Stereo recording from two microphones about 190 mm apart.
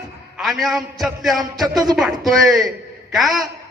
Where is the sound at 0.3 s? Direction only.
Centre (ahead or behind).